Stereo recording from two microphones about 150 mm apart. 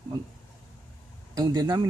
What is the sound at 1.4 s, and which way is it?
Speech, 25° right (ahead or behind).